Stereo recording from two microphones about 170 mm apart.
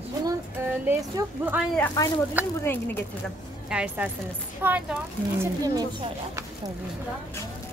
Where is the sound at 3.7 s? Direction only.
10° right (ahead or behind).